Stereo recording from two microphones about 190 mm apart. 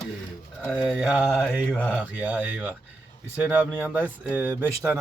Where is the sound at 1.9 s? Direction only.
5° right (ahead or behind).